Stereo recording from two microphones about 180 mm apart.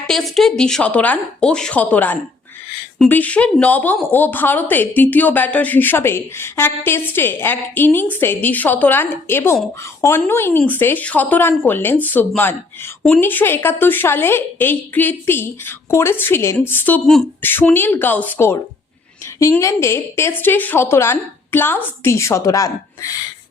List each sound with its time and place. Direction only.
0.1 s a woman's voice: centre (ahead or behind); by 23.1 s 20° left (ahead or behind)